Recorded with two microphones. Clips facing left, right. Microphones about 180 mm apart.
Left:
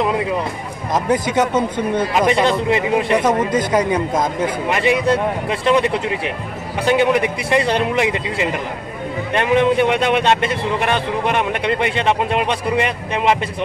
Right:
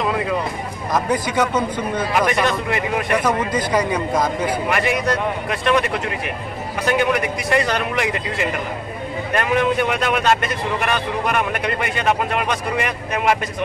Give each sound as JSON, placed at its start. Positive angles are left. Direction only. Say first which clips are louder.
{"t": 0.9, "sound": "a man's voice", "louder": "left 3 dB", "side_deg": 25}